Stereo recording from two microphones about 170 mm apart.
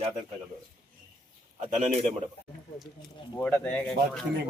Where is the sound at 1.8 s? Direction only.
45° right (ahead or behind).